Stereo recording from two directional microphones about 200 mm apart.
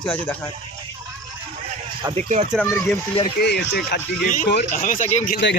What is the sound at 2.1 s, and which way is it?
Speech, 30° right (ahead or behind).